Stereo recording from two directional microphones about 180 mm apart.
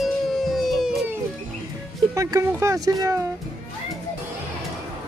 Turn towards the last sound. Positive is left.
turn(degrees=-20)  # may be behind; listen again after turning